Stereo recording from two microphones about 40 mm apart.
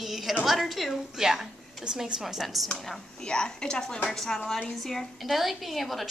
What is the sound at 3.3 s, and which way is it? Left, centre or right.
Speech, centre.